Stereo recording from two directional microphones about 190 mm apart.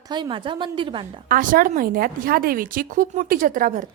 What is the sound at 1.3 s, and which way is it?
Speech, 45° right (ahead or behind).